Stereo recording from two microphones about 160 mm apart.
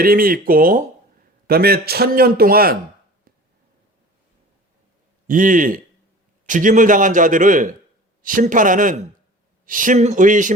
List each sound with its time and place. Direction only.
0.0 s a man's voice: 65° right (ahead or behind)
1.5 s a man's voice: 75° right (ahead or behind)
5.3 s a man's voice: 55° right (ahead or behind)